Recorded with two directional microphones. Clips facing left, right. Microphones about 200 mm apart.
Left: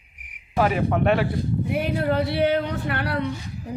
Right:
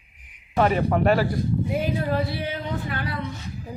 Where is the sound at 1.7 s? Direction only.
65° left (ahead or behind).